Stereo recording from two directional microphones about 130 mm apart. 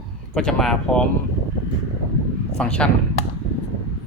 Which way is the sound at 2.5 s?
5° left (ahead or behind).